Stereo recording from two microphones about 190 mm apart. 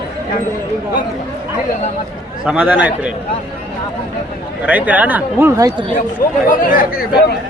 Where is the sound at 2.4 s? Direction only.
5° right (ahead or behind).